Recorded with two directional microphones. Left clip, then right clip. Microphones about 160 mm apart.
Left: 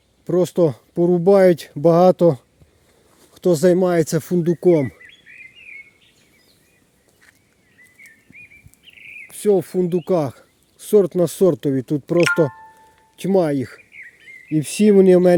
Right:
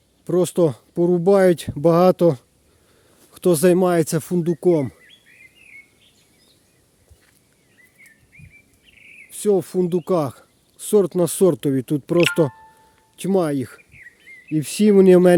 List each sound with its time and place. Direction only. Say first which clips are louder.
0.3 s speech: left 1 dB; 5° right (ahead or behind)
3.3 s speech: left 1 dB; 15° right (ahead or behind); by 4.9 s 10° left (ahead or behind)
9.3 s speech: left 2 dB; 5° left (ahead or behind); by 12.5 s 15° right (ahead or behind)
13.1 s speech: left 2 dB; centre (ahead or behind)
15.0 s speech: right 2 dB; 15° right (ahead or behind)